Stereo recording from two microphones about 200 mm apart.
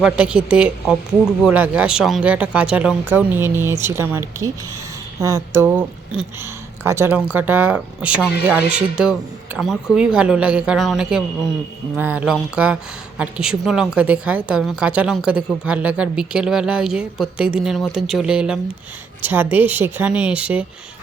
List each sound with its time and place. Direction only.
0.0 s speech: 5° right (ahead or behind)